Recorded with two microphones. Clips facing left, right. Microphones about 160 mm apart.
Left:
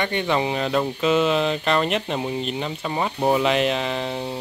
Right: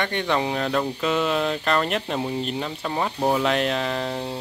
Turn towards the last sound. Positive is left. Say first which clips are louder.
# left 1 dB
turn(degrees=5)  # may be behind; listen again after turning